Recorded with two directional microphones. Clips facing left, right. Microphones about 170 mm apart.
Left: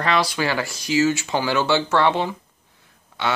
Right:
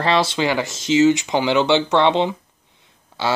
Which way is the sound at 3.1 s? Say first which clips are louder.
Right 2 dB; 30° right (ahead or behind).